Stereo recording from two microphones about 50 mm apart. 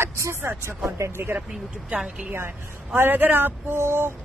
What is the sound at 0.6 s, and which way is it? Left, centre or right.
Speech, right.